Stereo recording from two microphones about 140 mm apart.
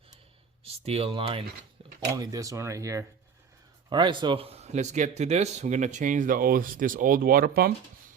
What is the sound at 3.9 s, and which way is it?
Speech, 35° right (ahead or behind).